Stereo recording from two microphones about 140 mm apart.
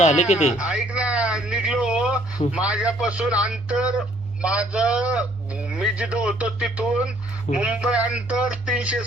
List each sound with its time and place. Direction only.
0.0 s speech: 55° left (ahead or behind)
0.5 s a man's voice: 5° right (ahead or behind)